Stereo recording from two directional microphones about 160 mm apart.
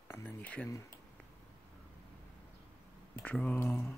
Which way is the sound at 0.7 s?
20° left (ahead or behind).